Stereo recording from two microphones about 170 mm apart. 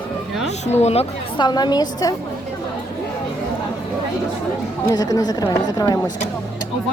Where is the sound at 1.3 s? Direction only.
25° left (ahead or behind).